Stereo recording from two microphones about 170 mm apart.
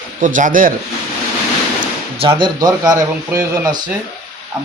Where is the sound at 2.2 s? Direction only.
30° right (ahead or behind).